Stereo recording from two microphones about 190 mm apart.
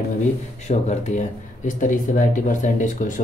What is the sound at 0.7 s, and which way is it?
Speech, 35° left (ahead or behind).